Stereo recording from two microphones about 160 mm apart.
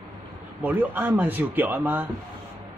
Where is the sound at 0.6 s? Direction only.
10° right (ahead or behind).